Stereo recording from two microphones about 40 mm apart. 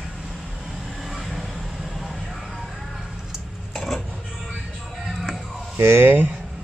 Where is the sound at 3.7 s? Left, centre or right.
Centre.